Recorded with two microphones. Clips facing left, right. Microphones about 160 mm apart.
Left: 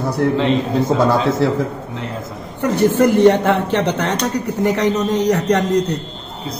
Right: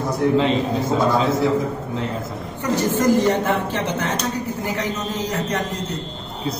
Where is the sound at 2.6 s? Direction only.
60° left (ahead or behind).